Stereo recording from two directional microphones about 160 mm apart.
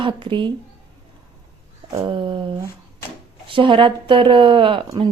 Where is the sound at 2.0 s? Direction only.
30° right (ahead or behind).